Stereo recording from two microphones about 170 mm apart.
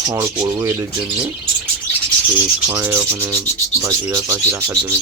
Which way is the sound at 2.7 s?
10° right (ahead or behind).